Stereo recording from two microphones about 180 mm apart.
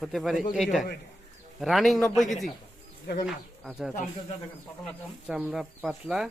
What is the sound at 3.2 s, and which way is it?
Speech, 5° right (ahead or behind).